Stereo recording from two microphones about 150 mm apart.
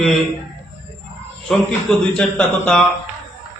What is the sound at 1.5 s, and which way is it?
A man's voice, 5° left (ahead or behind).